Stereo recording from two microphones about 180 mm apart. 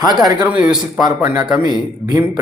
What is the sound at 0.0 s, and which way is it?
Speech, 20° right (ahead or behind).